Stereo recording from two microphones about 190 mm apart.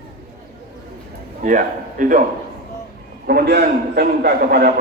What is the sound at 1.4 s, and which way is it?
Speech, 45° right (ahead or behind).